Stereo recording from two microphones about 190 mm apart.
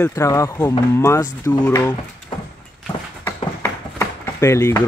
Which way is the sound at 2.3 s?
30° left (ahead or behind).